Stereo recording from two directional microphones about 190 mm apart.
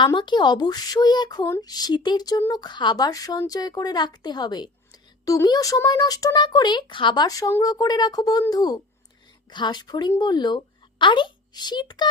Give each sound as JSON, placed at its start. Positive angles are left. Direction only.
{"t": 0.0, "sound": "a woman's voice", "side_deg": 25}